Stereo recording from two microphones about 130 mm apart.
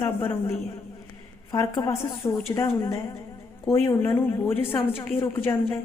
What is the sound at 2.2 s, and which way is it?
Speech, 35° left (ahead or behind).